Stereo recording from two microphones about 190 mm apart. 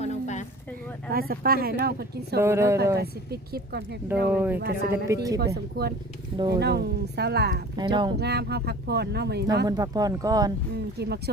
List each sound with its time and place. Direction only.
0.0 s a sound: 35° left (ahead or behind)
1.1 s speech: 50° right (ahead or behind)
2.4 s speech: 15° right (ahead or behind)
3.0 s speech: 55° right (ahead or behind)
4.4 s speech: 10° right (ahead or behind)
4.6 s speech: 55° right (ahead or behind)
5.0 s speech: 15° right (ahead or behind)
5.7 s speech: 55° right (ahead or behind)
6.3 s speech: 25° right (ahead or behind)
6.6 s speech: 60° right (ahead or behind)
7.8 s speech: 25° right (ahead or behind)
8.1 s speech: 60° right (ahead or behind)
9.6 s speech: 20° right (ahead or behind)
10.9 s speech: 60° right (ahead or behind)